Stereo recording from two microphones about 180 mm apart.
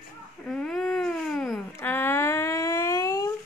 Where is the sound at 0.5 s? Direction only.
5° left (ahead or behind); by 3.3 s 20° left (ahead or behind).